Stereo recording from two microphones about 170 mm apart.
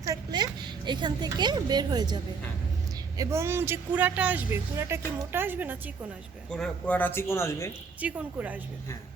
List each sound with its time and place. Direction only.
0.0 s a sound: 20° right (ahead or behind)
3.2 s speech: 15° right (ahead or behind)
6.5 s speech: 5° left (ahead or behind)
8.0 s speech: 10° right (ahead or behind)